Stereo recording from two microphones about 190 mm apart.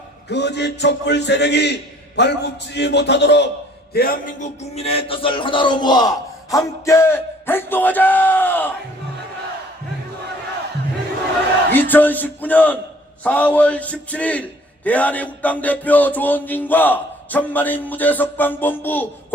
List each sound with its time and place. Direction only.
0.3 s a man's voice: 65° left (ahead or behind)
3.9 s a sound: 50° left (ahead or behind); by 8.7 s 10° left (ahead or behind)
11.7 s music: 10° left (ahead or behind)